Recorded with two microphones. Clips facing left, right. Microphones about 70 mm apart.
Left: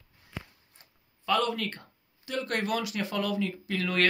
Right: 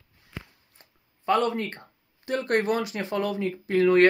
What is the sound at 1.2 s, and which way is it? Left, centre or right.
Speech, right.